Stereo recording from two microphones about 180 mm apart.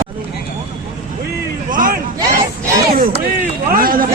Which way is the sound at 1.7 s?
50° right (ahead or behind).